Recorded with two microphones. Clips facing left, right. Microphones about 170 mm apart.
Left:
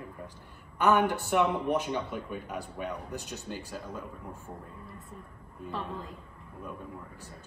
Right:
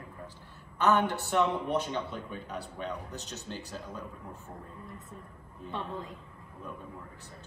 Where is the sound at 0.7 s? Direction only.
10° left (ahead or behind).